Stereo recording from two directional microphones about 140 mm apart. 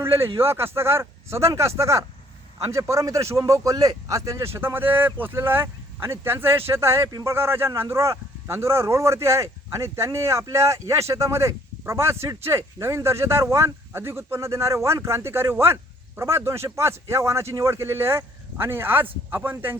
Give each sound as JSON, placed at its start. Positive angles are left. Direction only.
{"t": 0.0, "sound": "a man's voice", "side_deg": -20}